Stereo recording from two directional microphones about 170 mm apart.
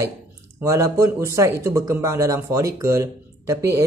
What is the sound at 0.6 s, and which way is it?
Speech, 15° right (ahead or behind).